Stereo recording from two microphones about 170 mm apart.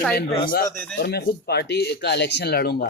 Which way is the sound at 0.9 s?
70° left (ahead or behind).